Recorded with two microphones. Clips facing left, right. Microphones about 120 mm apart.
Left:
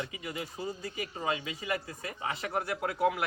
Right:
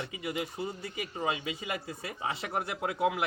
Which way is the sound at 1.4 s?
25° right (ahead or behind).